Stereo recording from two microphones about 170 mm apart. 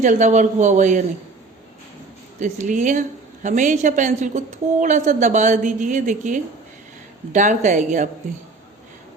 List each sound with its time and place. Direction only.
0.0 s a woman's voice: 45° right (ahead or behind)
2.4 s a woman's voice: 45° right (ahead or behind)